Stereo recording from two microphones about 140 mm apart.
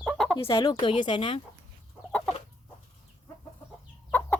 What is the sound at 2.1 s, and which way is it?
Chicken, 10° left (ahead or behind).